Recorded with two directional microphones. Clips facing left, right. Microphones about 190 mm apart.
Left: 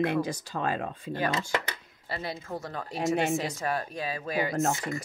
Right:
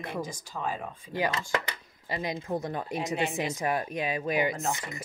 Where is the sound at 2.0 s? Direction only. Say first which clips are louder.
Right 3 dB; 15° right (ahead or behind).